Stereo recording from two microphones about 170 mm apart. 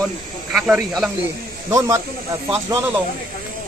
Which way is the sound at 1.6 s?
15° right (ahead or behind).